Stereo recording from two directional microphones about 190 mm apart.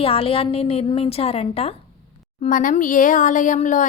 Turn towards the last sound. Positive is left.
turn(degrees=40)  # may be behind; listen again after turning